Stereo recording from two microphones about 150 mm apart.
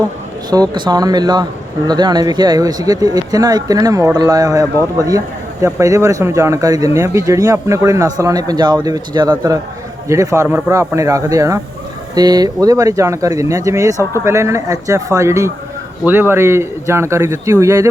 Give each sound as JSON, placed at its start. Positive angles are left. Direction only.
{"t": 0.5, "sound": "a man's voice", "side_deg": -25}